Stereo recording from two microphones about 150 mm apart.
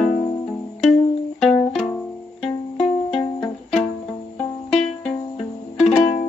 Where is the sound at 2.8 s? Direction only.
40° left (ahead or behind).